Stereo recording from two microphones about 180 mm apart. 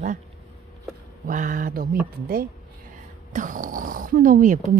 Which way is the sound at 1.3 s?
45° right (ahead or behind).